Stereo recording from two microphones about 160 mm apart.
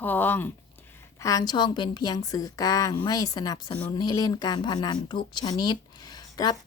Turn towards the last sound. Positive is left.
turn(degrees=25)  # may be behind; listen again after turning